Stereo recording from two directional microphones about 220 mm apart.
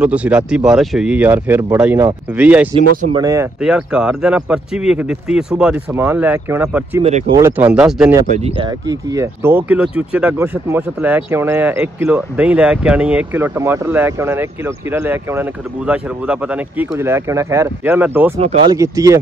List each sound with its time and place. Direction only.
0.0 s speech: 5° right (ahead or behind)
3.1 s speech: 15° right (ahead or behind)
3.6 s speech: 5° right (ahead or behind)
7.0 s speech: 30° right (ahead or behind)
7.3 s speech: 10° right (ahead or behind)
8.3 s speech: 20° right (ahead or behind)
18.4 s speech: 25° right (ahead or behind)
18.8 s speech: 15° right (ahead or behind)